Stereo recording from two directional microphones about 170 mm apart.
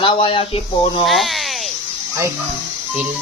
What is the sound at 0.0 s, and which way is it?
Speech, 30° left (ahead or behind).